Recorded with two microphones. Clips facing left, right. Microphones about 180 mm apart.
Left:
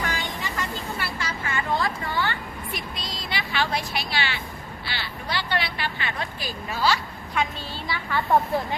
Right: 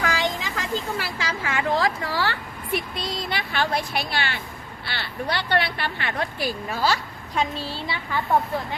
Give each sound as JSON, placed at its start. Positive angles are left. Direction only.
{"t": 0.0, "sound": "a sound", "side_deg": -90}
{"t": 4.9, "sound": "speech", "side_deg": -55}
{"t": 6.9, "sound": "a woman's voice", "side_deg": -30}